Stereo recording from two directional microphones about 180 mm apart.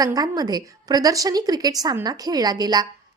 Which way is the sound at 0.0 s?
20° right (ahead or behind).